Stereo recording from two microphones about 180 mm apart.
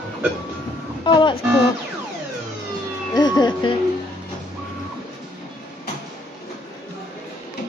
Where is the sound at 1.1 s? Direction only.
25° left (ahead or behind).